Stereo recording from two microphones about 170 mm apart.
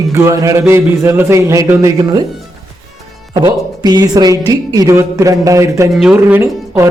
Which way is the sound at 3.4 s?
25° right (ahead or behind).